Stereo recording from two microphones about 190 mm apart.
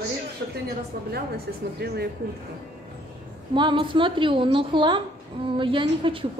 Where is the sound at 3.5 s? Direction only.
25° right (ahead or behind).